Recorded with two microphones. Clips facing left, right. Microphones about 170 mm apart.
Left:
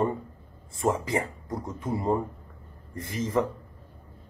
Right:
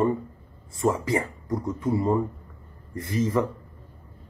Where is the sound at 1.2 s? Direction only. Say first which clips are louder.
Right 5 dB; 25° left (ahead or behind).